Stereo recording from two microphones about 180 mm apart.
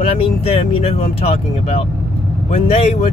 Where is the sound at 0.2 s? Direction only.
30° left (ahead or behind).